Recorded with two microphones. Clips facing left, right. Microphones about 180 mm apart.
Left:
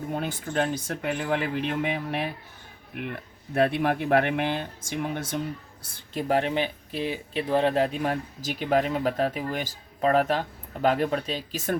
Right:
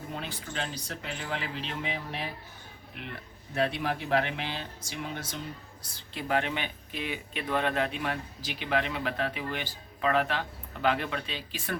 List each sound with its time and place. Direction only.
0.1 s speech: 50° left (ahead or behind)
6.1 s speech: 40° left (ahead or behind)